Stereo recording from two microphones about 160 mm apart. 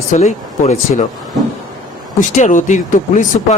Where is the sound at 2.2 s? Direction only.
50° left (ahead or behind).